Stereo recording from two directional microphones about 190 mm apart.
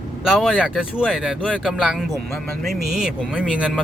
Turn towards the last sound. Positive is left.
turn(degrees=-5)  # may be behind; listen again after turning